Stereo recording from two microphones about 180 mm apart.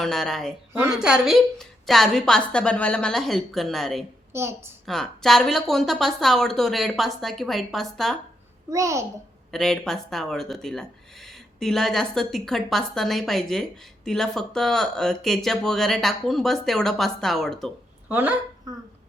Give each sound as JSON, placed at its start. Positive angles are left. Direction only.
{"t": 0.0, "sound": "speech", "side_deg": 0}
{"t": 0.7, "sound": "speech", "side_deg": -10}
{"t": 4.3, "sound": "a woman's voice", "side_deg": -15}
{"t": 4.9, "sound": "speech", "side_deg": 0}
{"t": 8.7, "sound": "a child's voice", "side_deg": -15}
{"t": 9.5, "sound": "a child's voice", "side_deg": 0}